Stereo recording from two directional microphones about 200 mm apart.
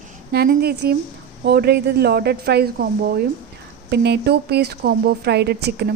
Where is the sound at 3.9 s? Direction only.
55° right (ahead or behind).